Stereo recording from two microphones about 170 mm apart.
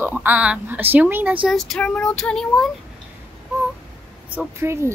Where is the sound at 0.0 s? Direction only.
10° right (ahead or behind).